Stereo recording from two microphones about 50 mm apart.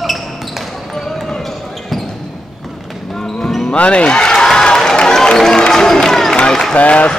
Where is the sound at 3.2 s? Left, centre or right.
Centre.